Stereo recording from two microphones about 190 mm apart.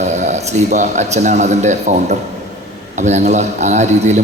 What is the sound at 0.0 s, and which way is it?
A man's voice, 35° right (ahead or behind).